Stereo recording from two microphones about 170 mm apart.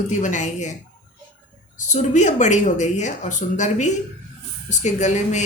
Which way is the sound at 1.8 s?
45° left (ahead or behind).